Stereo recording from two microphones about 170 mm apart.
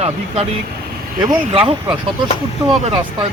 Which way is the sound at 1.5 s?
30° right (ahead or behind).